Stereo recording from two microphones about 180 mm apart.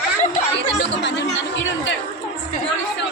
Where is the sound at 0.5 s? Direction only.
80° left.